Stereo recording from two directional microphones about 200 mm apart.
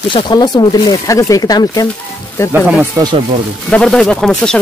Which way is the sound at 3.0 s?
15° right (ahead or behind).